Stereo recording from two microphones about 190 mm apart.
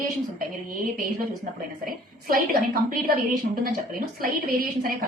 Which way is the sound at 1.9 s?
50° right (ahead or behind).